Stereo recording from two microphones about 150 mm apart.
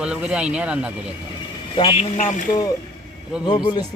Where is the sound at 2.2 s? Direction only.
55° left (ahead or behind).